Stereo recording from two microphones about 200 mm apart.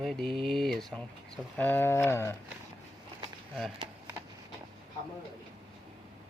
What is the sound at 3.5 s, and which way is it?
Speech, centre (ahead or behind).